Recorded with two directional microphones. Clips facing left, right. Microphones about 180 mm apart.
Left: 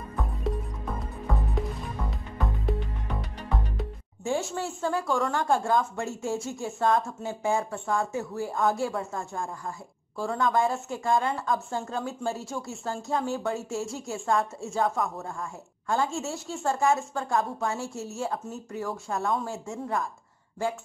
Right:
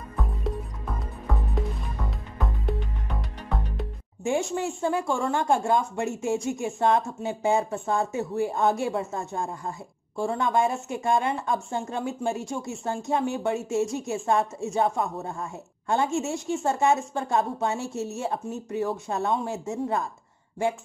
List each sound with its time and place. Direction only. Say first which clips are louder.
2.0 s music: even; centre (ahead or behind)
4.2 s speech: right 3 dB; 15° right (ahead or behind)